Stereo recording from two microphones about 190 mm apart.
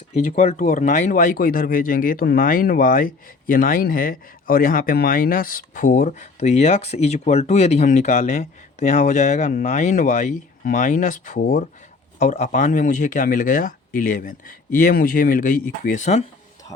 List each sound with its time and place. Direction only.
0.1 s speech: 40° left (ahead or behind)